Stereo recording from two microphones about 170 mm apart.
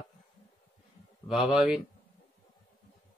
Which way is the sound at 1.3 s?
5° right (ahead or behind).